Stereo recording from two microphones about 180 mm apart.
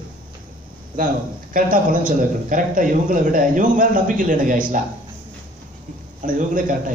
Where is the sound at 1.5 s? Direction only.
50° right (ahead or behind).